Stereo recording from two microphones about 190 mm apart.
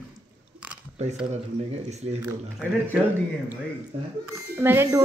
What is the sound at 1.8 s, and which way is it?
Speech, 35° right (ahead or behind).